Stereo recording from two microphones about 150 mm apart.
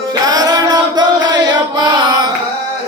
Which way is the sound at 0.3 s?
25° right (ahead or behind).